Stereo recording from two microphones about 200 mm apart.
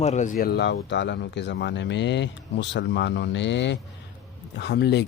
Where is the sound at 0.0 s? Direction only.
35° left (ahead or behind).